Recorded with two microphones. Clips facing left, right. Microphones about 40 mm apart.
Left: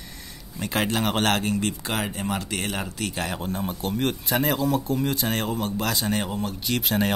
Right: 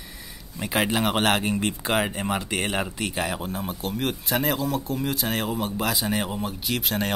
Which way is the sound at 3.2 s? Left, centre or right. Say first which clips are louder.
Left 1 dB; centre.